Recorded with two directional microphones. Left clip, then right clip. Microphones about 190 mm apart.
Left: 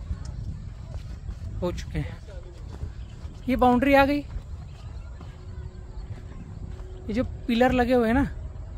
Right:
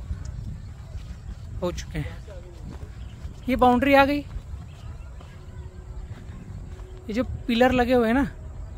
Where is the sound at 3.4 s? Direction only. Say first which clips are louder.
Right 2 dB; 15° right (ahead or behind).